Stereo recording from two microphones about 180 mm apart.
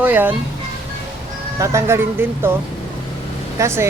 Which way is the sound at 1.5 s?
15° right (ahead or behind).